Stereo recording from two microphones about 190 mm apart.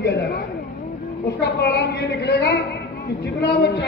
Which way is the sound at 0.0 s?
60° left (ahead or behind).